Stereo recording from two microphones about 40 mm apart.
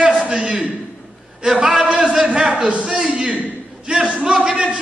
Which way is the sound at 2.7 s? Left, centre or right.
Right.